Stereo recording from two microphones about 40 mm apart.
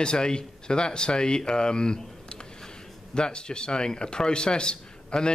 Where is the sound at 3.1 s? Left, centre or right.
Left.